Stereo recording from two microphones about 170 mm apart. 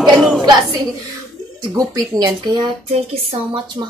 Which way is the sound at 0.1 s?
Centre (ahead or behind).